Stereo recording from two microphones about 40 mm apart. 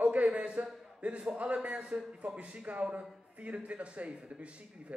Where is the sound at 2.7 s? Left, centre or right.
Right.